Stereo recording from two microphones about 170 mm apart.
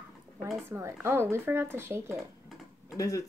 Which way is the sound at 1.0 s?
15° right (ahead or behind).